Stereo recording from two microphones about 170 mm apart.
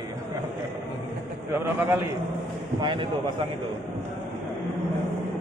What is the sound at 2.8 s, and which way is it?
Speech, 30° right (ahead or behind).